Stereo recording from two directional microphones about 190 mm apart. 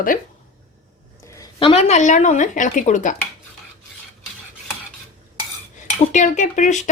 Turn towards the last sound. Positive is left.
turn(degrees=40)  # may be behind; listen again after turning